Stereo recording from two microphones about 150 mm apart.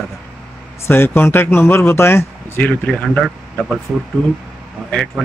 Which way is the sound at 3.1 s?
Centre (ahead or behind).